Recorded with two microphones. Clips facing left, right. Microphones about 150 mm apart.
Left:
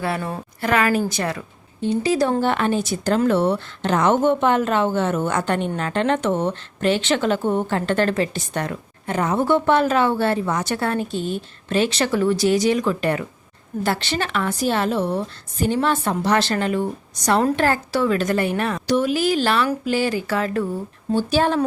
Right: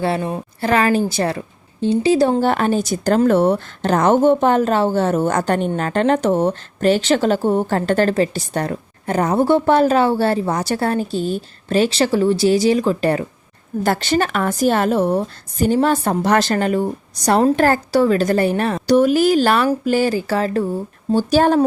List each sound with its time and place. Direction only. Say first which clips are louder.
0.0 s a woman's voice: right 5 dB; 25° right (ahead or behind)
2.4 s a woman's voice: right 3 dB; 40° right (ahead or behind)
13.8 s a woman's voice: right 6 dB; 45° right (ahead or behind)